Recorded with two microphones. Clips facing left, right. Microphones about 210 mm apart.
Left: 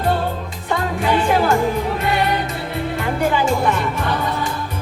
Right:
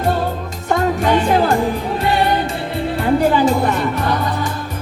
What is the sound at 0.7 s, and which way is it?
Music, 40° right (ahead or behind).